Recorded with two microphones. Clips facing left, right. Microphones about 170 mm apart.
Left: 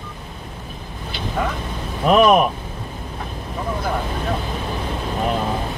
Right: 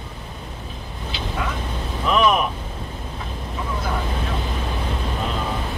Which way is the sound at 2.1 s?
50° left (ahead or behind).